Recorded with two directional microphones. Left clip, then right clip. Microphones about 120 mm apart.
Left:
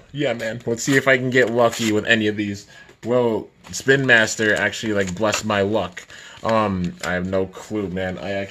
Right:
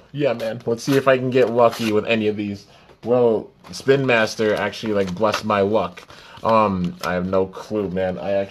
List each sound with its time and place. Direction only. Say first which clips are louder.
0.1 s speech: right 2 dB; 10° left (ahead or behind)
0.4 s speech: right 1 dB; 25° left (ahead or behind); by 8.2 s 10° left (ahead or behind)
8.2 s speech: right 5 dB; 25° left (ahead or behind)